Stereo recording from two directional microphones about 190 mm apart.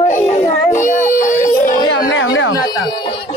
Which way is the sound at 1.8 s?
75° left (ahead or behind).